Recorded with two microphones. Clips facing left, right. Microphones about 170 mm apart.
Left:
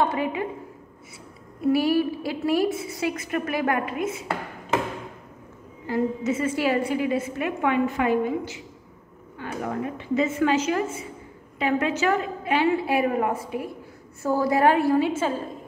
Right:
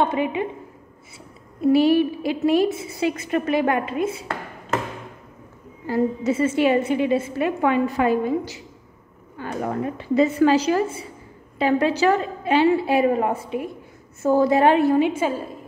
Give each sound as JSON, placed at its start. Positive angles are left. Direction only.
{"t": 0.0, "sound": "a woman's voice", "side_deg": -20}
{"t": 1.6, "sound": "a woman's voice", "side_deg": -25}
{"t": 5.9, "sound": "a woman's voice", "side_deg": -35}